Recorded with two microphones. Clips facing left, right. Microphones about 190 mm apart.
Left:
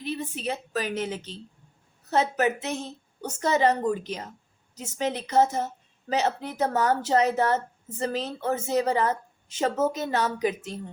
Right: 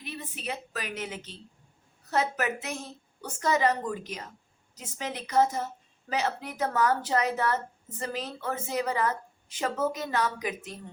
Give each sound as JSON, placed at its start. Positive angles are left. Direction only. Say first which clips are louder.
{"t": 0.0, "sound": "a woman's voice", "louder": "left 7 dB", "side_deg": 30}